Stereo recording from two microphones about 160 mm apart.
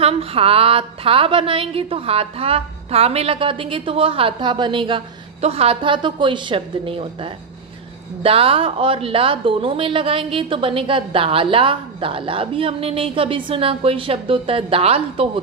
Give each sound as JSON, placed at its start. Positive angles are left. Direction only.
{"t": 0.0, "sound": "a woman's voice", "side_deg": -35}